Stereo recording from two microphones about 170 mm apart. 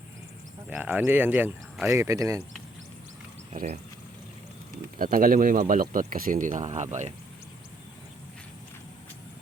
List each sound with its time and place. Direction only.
0.7 s speech: 10° right (ahead or behind)
3.5 s speech: 45° right (ahead or behind)
4.9 s speech: 55° right (ahead or behind)